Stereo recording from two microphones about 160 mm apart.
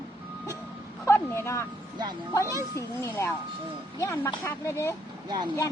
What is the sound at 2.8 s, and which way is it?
Speech, 15° left (ahead or behind).